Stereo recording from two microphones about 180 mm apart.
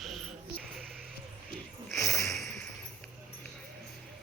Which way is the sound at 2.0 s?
15° left (ahead or behind).